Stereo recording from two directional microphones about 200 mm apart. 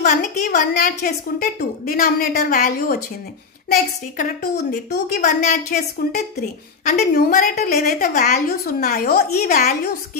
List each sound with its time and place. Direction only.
0.0 s a woman's voice: 40° left (ahead or behind)